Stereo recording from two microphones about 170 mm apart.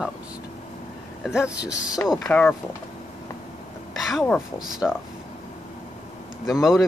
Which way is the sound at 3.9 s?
Centre (ahead or behind).